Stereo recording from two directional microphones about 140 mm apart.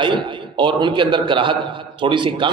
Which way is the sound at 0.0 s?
35° right (ahead or behind).